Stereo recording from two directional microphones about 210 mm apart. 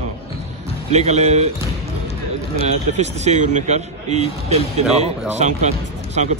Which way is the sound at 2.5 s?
30° right (ahead or behind).